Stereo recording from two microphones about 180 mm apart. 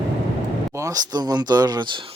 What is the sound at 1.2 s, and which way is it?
Speech, 20° right (ahead or behind).